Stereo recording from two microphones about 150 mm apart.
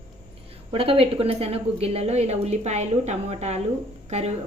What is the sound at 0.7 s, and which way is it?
A woman's voice, 40° right (ahead or behind).